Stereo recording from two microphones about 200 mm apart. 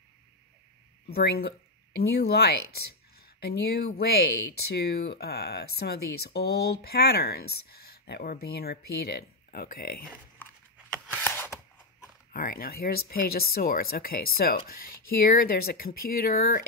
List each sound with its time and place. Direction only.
1.1 s speech: 50° left (ahead or behind)
11.1 s a sound: 10° left (ahead or behind)
12.3 s speech: 45° left (ahead or behind)